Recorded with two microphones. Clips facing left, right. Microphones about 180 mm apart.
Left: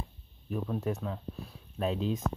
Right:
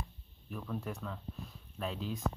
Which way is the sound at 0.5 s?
20° left (ahead or behind).